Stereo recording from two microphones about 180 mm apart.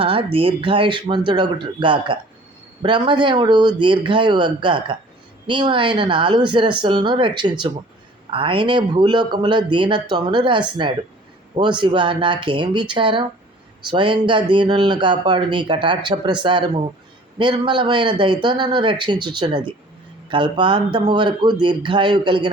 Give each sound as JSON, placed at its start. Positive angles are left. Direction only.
{"t": 0.0, "sound": "speech", "side_deg": -30}